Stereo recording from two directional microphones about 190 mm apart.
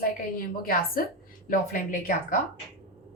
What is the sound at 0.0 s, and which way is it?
Speech, 50° left (ahead or behind).